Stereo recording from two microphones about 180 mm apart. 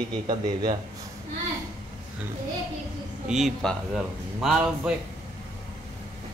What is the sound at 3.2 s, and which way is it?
Speech, centre (ahead or behind).